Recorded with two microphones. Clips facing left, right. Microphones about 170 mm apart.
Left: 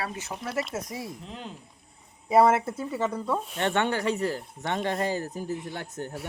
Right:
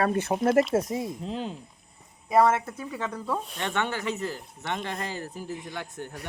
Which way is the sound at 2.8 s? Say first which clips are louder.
Left 4 dB; 15° left (ahead or behind).